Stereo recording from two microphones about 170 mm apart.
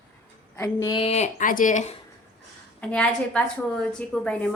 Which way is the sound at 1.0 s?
40° left (ahead or behind).